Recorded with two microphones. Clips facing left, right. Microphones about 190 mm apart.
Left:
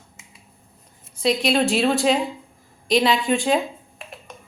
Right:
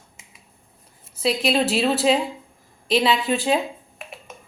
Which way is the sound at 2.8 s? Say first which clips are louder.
Left 1 dB; 5° right (ahead or behind).